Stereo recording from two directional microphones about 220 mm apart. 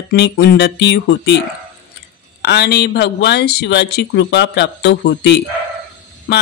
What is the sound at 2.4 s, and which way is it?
A woman's voice, 50° left (ahead or behind).